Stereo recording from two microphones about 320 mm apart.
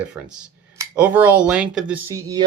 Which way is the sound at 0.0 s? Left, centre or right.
Centre.